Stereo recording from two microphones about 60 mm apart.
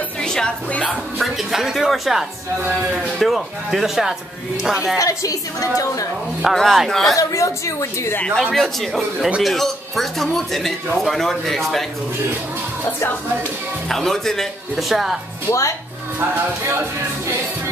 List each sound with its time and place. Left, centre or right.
0.2 s music: centre
1.2 s a woman's voice: centre
4.9 s a woman's voice: left
6.5 s speech: centre
7.2 s a woman's voice: left
8.4 s speech: centre
13.8 s speech: centre